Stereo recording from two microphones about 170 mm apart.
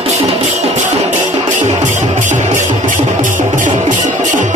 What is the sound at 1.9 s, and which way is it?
Music, 45° right (ahead or behind).